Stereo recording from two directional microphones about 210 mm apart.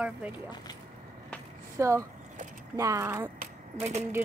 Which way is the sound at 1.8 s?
15° right (ahead or behind).